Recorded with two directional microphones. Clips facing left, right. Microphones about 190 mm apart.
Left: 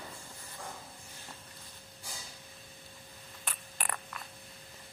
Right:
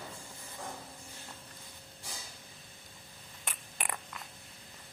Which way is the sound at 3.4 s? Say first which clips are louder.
Even; 20° right (ahead or behind).